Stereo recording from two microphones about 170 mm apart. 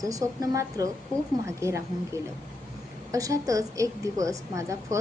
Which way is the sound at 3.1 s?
20° right (ahead or behind).